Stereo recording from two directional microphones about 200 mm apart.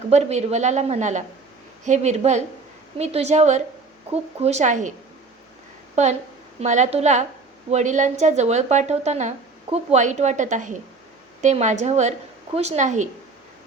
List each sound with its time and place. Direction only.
0.1 s a woman's voice: 35° right (ahead or behind)
6.0 s a woman's voice: 35° right (ahead or behind)